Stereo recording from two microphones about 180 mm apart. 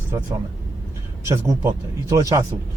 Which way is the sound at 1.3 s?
15° right (ahead or behind).